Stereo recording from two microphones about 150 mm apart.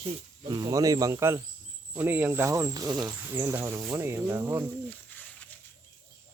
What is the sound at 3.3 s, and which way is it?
Speech, 15° right (ahead or behind).